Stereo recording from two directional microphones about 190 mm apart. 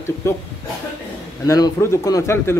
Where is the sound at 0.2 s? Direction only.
15° left (ahead or behind).